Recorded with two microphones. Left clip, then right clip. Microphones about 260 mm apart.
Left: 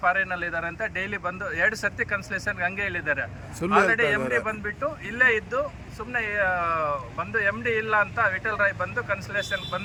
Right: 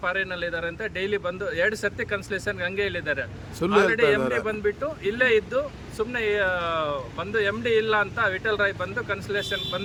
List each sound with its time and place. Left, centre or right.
0.0 s speech: centre
3.6 s a man's voice: centre
3.9 s speech: centre